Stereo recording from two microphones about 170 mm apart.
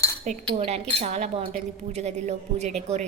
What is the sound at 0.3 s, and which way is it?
A woman's voice, 40° right (ahead or behind).